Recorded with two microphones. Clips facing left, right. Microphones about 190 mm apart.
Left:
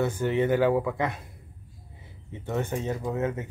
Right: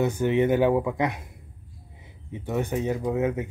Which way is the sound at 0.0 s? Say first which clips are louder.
Right 3 dB; 15° right (ahead or behind).